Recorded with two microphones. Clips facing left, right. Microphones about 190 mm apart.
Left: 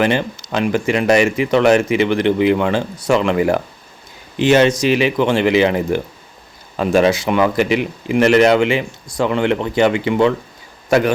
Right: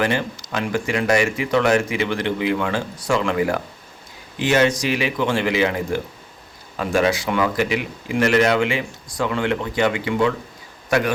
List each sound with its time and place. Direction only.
0.0 s speech: 25° left (ahead or behind)